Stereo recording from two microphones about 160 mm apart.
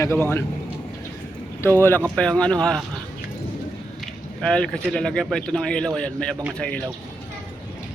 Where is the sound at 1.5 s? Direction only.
15° left (ahead or behind).